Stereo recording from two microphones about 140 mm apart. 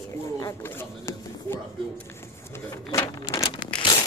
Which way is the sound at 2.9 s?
25° left (ahead or behind).